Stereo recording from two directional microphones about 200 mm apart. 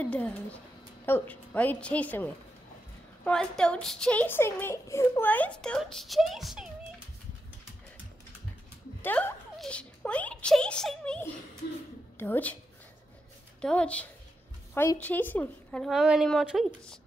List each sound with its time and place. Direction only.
0.0 s a woman's voice: 5° left (ahead or behind)
9.0 s a woman's voice: 5° left (ahead or behind)
13.6 s a woman's voice: 5° left (ahead or behind)